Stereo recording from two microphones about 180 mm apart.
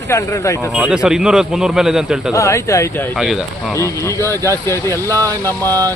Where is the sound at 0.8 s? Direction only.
5° right (ahead or behind).